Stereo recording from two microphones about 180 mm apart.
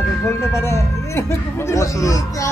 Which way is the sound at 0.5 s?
15° left (ahead or behind).